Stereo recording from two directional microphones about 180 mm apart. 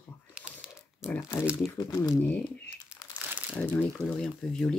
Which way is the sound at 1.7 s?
20° left (ahead or behind).